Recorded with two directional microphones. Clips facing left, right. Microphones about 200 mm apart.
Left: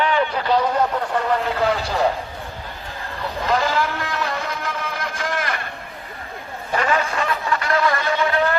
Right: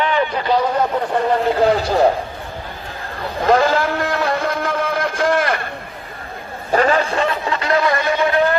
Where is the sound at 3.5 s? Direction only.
50° right (ahead or behind).